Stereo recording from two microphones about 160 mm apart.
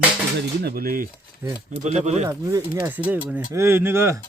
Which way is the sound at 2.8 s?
10° right (ahead or behind).